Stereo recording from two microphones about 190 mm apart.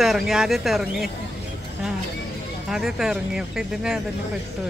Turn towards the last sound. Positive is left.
turn(degrees=-5)  # may be behind; listen again after turning